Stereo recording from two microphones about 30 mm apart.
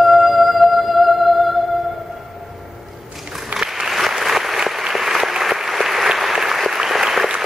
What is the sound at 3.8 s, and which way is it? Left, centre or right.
Applause, centre.